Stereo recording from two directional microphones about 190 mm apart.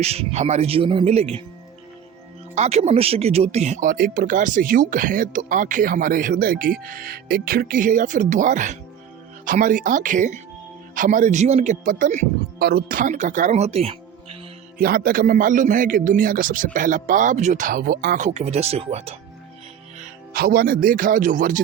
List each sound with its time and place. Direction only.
0.0 s speech: 35° right (ahead or behind)
2.6 s speech: 35° right (ahead or behind)
12.5 s speech: 55° right (ahead or behind); by 14.3 s 30° right (ahead or behind)
14.8 s speech: 50° right (ahead or behind)
18.2 s speech: 35° right (ahead or behind)
20.3 s speech: 50° right (ahead or behind)